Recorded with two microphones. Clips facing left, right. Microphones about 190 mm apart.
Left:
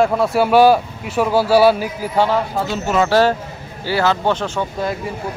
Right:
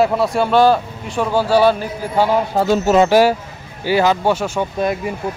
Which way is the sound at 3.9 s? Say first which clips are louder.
Right 2 dB; 15° right (ahead or behind).